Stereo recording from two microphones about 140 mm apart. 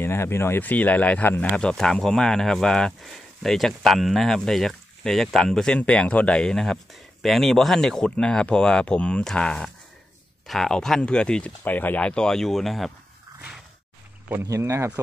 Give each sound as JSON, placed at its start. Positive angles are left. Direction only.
{"t": 0.0, "sound": "speech", "side_deg": 20}
{"t": 14.3, "sound": "speech", "side_deg": -20}